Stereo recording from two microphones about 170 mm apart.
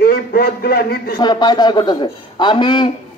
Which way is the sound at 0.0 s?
65° left (ahead or behind).